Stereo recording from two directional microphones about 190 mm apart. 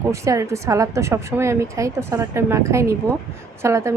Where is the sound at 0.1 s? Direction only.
15° right (ahead or behind).